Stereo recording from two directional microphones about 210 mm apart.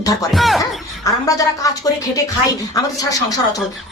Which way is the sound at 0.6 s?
15° left (ahead or behind).